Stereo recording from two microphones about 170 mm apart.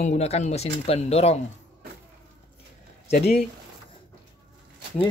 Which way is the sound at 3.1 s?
65° left (ahead or behind).